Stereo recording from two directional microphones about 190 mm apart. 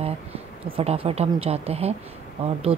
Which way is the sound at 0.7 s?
30° right (ahead or behind).